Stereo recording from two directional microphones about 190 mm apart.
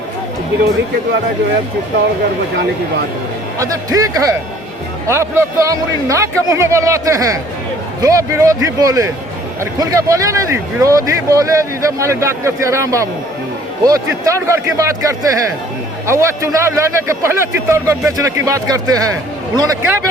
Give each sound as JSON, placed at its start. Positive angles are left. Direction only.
{"t": 3.6, "sound": "speech", "side_deg": -15}